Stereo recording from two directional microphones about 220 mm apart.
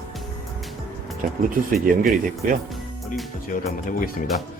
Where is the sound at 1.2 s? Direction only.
40° right (ahead or behind).